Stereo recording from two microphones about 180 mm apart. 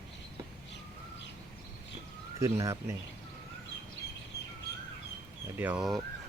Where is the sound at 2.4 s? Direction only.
15° right (ahead or behind).